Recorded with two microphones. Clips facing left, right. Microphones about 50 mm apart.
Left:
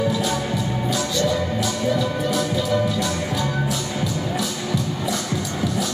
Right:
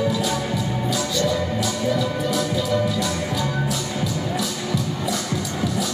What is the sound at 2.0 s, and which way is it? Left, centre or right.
Music, left.